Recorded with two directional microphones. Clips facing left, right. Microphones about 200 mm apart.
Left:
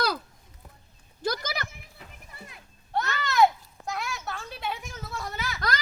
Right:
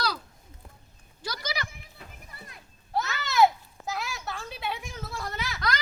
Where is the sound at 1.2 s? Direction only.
50° left (ahead or behind).